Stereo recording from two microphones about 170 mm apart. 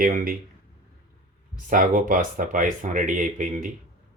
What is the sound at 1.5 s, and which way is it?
Speech, 55° right (ahead or behind).